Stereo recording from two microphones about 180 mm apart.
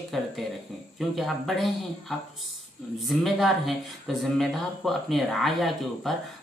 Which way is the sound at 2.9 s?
Centre (ahead or behind).